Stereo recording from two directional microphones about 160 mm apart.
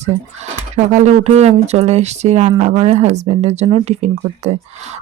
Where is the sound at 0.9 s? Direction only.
45° right (ahead or behind).